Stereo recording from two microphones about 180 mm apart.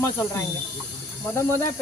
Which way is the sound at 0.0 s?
15° left (ahead or behind).